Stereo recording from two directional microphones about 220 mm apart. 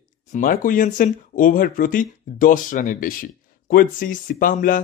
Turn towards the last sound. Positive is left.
turn(degrees=40)  # may be behind; listen again after turning